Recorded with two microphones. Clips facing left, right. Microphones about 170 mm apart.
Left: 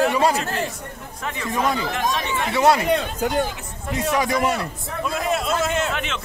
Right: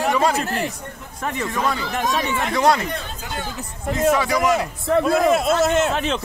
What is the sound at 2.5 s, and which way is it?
Speech, 5° left (ahead or behind).